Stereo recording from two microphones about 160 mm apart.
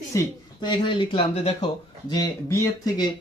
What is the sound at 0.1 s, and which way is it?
Speech, 20° left (ahead or behind).